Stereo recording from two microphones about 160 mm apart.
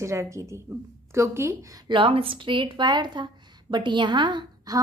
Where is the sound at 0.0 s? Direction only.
20° right (ahead or behind).